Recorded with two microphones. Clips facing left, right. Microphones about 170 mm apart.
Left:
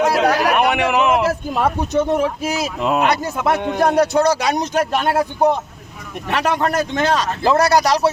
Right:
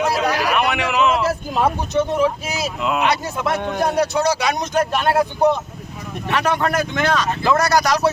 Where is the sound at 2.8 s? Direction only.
40° left (ahead or behind).